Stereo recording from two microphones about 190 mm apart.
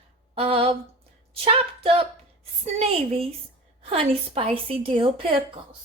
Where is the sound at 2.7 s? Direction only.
30° right (ahead or behind).